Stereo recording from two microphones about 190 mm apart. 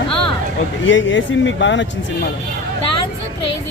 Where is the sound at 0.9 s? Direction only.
80° left.